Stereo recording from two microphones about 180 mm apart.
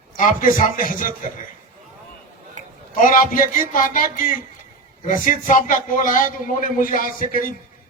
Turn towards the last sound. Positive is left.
turn(degrees=50)  # may be behind; listen again after turning